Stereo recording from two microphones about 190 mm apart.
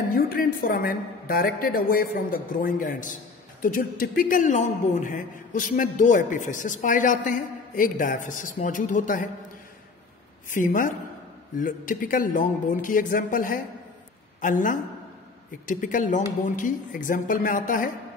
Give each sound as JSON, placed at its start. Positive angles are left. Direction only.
{"t": 0.1, "sound": "a man's voice", "side_deg": 50}
{"t": 10.5, "sound": "a man's voice", "side_deg": 45}